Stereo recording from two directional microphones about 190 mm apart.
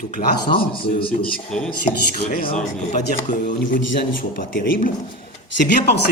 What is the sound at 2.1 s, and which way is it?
Speech, 50° left (ahead or behind).